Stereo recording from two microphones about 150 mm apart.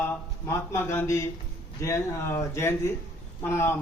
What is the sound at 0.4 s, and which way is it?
A man's voice, 15° left (ahead or behind).